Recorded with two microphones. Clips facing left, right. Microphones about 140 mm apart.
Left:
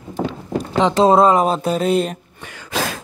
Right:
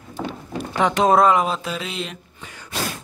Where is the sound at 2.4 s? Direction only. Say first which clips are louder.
Left 5 dB; 90° left.